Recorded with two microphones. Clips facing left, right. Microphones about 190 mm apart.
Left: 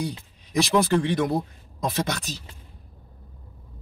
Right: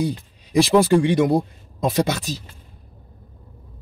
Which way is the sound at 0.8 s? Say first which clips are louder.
Right 6 dB; 15° right (ahead or behind).